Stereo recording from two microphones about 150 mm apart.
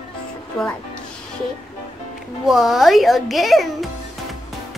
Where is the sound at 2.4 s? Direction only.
Centre (ahead or behind).